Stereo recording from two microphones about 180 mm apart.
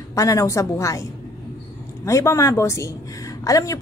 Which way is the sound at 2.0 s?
15° left (ahead or behind).